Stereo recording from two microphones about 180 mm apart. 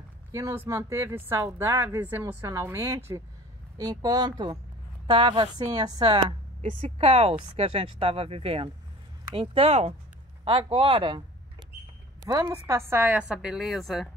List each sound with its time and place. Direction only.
0.3 s a woman's voice: 15° right (ahead or behind)
6.6 s a woman's voice: 40° right (ahead or behind)
12.3 s a woman's voice: 20° right (ahead or behind); by 14.0 s centre (ahead or behind)